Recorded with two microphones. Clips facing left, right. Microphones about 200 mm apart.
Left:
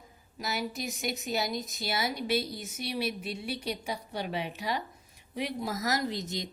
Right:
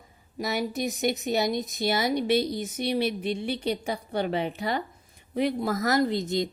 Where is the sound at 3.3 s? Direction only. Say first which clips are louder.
Right 7 dB; 5° left (ahead or behind).